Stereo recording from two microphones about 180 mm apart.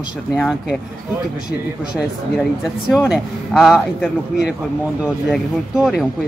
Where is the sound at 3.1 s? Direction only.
Centre (ahead or behind).